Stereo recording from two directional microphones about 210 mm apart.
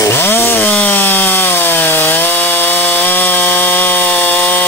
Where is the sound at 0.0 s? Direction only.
10° left (ahead or behind).